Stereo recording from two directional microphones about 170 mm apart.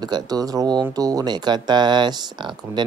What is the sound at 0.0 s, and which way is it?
Speech, 25° right (ahead or behind).